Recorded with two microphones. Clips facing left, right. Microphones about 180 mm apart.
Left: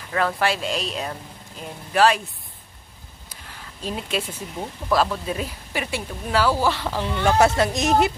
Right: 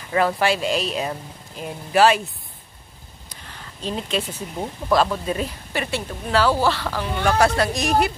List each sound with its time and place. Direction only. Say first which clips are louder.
0.1 s speech: right 3 dB; 5° right (ahead or behind)
3.8 s speech: right 2 dB; 10° left (ahead or behind)